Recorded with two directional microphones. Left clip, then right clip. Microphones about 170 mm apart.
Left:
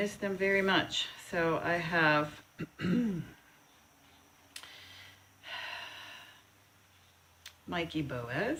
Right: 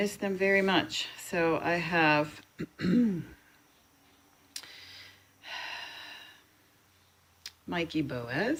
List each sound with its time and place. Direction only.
0.0 s speech: 40° right (ahead or behind)
4.5 s gasp: 40° right (ahead or behind)
7.4 s speech: 40° right (ahead or behind)